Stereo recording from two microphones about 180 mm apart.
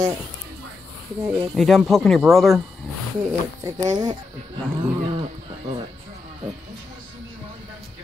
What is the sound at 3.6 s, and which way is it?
Speech, 20° right (ahead or behind).